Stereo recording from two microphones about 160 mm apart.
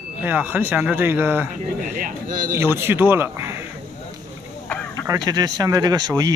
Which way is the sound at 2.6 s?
15° right (ahead or behind).